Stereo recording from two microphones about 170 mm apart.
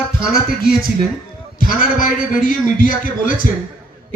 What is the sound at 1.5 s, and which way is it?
A man's voice, 50° left (ahead or behind).